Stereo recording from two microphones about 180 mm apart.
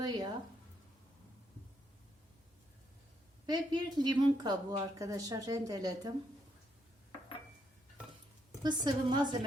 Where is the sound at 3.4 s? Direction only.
25° right (ahead or behind).